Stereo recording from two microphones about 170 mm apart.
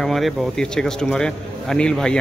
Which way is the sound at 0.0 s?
Centre (ahead or behind).